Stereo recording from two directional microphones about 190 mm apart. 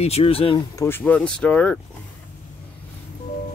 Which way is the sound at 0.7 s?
10° left (ahead or behind).